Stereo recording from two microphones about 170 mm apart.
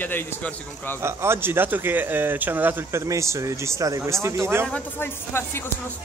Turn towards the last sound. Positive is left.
turn(degrees=15)  # may be behind; listen again after turning